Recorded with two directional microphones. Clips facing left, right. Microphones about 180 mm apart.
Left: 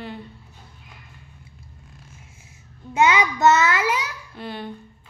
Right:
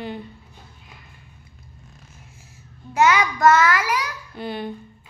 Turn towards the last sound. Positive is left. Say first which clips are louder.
# right 4 dB
turn(degrees=0)  # may be behind; listen again after turning